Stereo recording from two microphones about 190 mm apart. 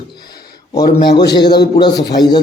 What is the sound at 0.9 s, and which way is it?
Speech, 60° left (ahead or behind).